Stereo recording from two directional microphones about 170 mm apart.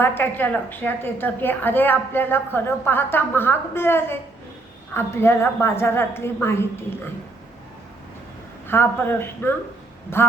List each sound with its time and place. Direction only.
0.0 s a woman's voice: 10° left (ahead or behind)
8.6 s a woman's voice: 15° left (ahead or behind)